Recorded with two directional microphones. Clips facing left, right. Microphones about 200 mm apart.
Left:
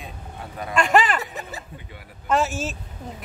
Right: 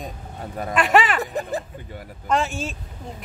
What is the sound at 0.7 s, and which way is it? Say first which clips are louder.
Speech: even; 5° right (ahead or behind).